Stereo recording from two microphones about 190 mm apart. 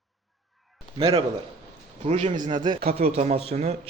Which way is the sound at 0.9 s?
30° right (ahead or behind).